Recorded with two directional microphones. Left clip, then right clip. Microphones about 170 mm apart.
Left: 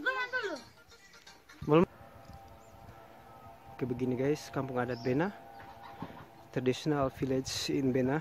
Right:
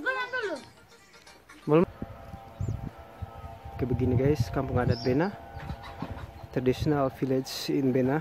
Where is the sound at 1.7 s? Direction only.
20° left (ahead or behind).